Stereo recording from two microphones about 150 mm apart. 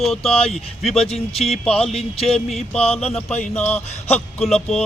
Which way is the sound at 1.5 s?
5° left (ahead or behind).